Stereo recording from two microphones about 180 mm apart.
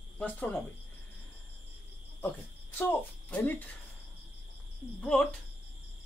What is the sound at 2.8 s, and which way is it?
Speech, 10° left (ahead or behind).